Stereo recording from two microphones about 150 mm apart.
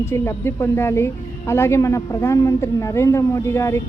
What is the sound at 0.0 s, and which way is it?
A woman's voice, 15° left (ahead or behind).